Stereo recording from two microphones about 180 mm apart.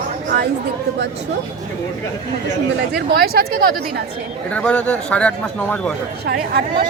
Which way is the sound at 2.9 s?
60° right (ahead or behind).